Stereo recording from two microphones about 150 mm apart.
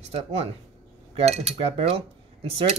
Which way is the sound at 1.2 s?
45° right (ahead or behind).